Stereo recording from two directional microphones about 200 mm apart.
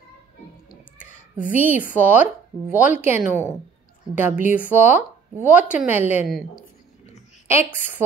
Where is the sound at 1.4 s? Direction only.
40° right (ahead or behind).